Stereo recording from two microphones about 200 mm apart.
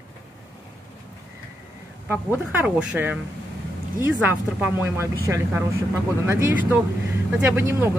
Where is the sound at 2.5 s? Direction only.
5° right (ahead or behind).